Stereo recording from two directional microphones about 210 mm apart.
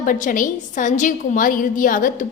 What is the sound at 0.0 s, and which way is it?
A woman's voice, 40° left (ahead or behind).